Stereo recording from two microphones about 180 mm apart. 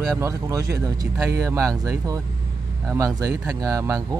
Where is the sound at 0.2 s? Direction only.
20° right (ahead or behind).